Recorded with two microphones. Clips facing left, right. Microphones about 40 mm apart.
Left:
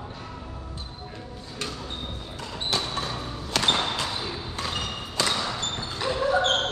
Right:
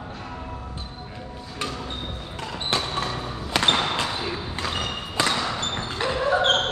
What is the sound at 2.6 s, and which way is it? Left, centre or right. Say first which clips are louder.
Basketball bounce: right 2 dB; right.